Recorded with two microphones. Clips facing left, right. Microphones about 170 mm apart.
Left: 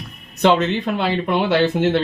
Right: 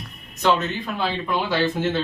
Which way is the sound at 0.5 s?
70° left (ahead or behind).